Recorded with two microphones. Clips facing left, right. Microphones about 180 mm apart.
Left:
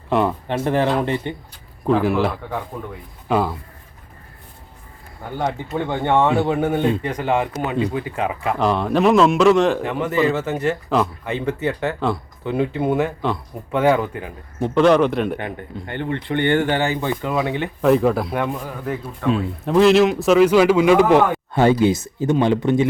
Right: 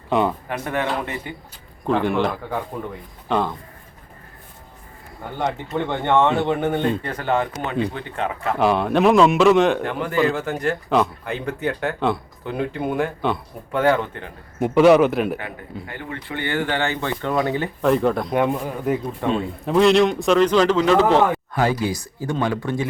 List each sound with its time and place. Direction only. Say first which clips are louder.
0.1 s speech: left 1 dB; centre (ahead or behind)
0.4 s speech: left 5 dB; 30° left (ahead or behind)
1.8 s a man's voice: left 2 dB; 5° left (ahead or behind)
5.4 s a man's voice: even; 10° left (ahead or behind)
8.5 s speech: right 1 dB; 5° right (ahead or behind)
14.6 s speech: right 1 dB; 5° right (ahead or behind)
15.9 s speech: left 10 dB; 30° left (ahead or behind)
16.3 s speech: left 6 dB; 55° left (ahead or behind)
16.8 s speech: left 2 dB; 15° left (ahead or behind)
18.3 s speech: right 3 dB; 10° right (ahead or behind)
19.3 s a man's voice: left 3 dB; centre (ahead or behind)
21.5 s speech: left 6 dB; 25° left (ahead or behind)